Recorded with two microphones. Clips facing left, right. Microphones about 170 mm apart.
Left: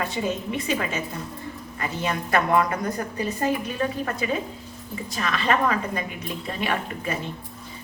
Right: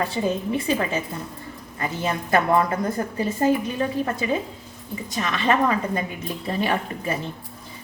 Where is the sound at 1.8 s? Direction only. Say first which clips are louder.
Right 2 dB; 25° right (ahead or behind).